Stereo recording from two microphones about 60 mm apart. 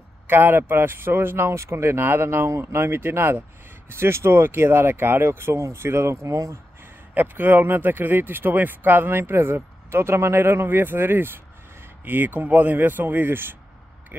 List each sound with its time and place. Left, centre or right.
0.3 s speech: right
7.2 s speech: right